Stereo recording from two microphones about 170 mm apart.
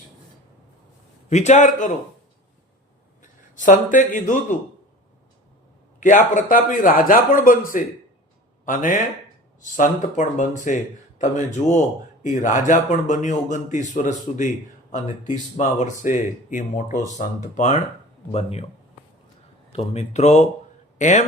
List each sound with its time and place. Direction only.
1.3 s speech: 45° left (ahead or behind)
3.2 s a man's voice: 50° left (ahead or behind)
6.0 s speech: 50° left (ahead or behind)
15.5 s speech: 45° left (ahead or behind)
19.7 s speech: 40° left (ahead or behind)